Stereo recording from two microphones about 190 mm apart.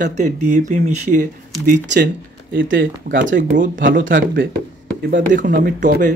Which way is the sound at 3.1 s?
45° right (ahead or behind).